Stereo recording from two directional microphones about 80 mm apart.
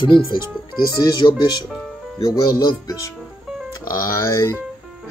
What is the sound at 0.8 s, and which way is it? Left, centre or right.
Speech, left.